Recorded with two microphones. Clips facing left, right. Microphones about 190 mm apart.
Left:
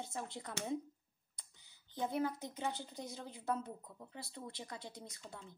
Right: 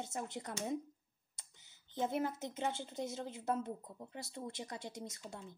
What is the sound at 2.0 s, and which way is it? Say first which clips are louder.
A woman's voice: right 1 dB; 20° right (ahead or behind).